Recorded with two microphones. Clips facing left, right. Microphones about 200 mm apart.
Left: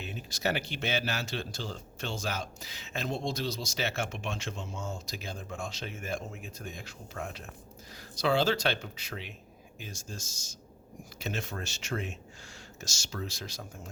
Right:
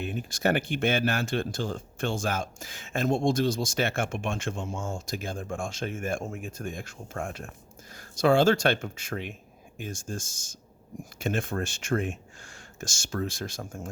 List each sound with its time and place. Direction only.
0.0 s speech: 55° right (ahead or behind)